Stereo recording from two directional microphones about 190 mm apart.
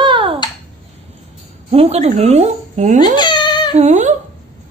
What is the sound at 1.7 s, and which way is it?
A woman's voice, 30° right (ahead or behind).